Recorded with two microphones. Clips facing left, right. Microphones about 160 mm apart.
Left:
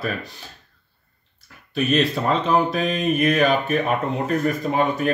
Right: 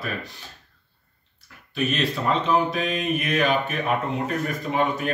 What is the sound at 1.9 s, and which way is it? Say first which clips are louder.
Speech: left 5 dB; 40° left (ahead or behind).